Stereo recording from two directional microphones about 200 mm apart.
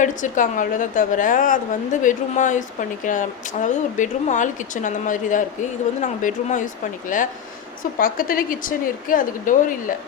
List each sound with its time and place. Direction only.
0.0 s a woman's voice: 40° left (ahead or behind)